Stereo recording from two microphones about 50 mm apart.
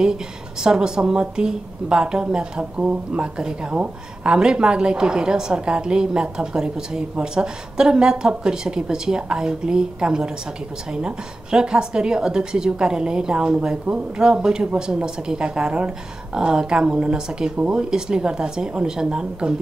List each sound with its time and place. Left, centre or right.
0.7 s a woman's voice: centre